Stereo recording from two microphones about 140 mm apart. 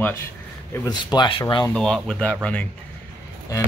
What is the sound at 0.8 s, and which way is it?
Speech, 30° left (ahead or behind).